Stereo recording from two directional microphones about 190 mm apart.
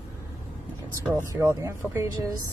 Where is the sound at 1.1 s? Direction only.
10° right (ahead or behind).